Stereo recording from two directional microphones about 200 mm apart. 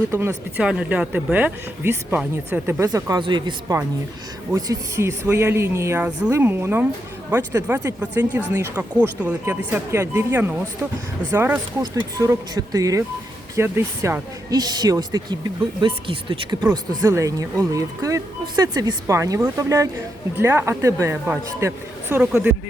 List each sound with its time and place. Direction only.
0.1 s speech: 10° right (ahead or behind)